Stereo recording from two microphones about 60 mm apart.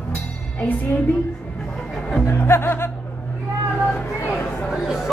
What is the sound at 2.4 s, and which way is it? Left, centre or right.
Speech, left.